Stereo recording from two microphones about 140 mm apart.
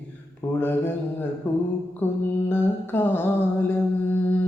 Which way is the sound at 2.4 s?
15° left (ahead or behind).